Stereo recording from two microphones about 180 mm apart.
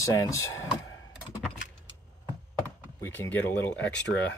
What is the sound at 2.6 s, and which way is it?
Speech, 10° left (ahead or behind).